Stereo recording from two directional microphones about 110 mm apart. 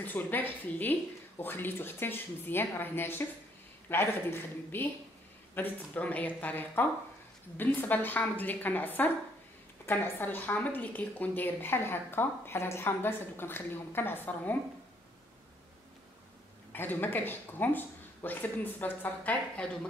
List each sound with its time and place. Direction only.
0.0 s a woman's voice: 15° left (ahead or behind)
16.7 s speech: 15° left (ahead or behind)